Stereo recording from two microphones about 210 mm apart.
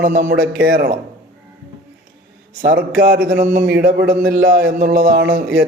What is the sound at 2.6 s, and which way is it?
A man's voice, 45° right (ahead or behind).